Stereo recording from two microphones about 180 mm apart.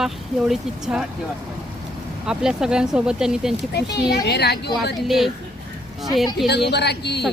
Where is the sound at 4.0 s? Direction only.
65° left (ahead or behind).